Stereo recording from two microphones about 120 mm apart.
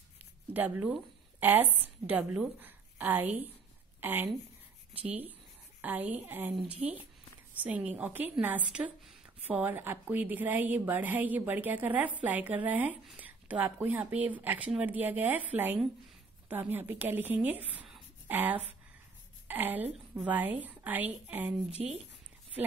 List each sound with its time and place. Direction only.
0.5 s a woman's voice: 15° right (ahead or behind)
7.6 s a woman's voice: 15° right (ahead or behind)